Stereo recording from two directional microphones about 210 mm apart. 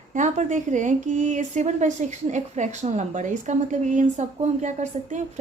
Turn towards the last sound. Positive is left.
turn(degrees=-35)  # may be behind; listen again after turning